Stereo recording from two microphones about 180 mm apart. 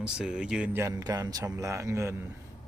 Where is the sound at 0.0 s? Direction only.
5° right (ahead or behind).